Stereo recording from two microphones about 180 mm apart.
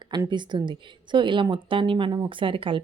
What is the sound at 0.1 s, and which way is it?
A woman's voice, 25° right (ahead or behind).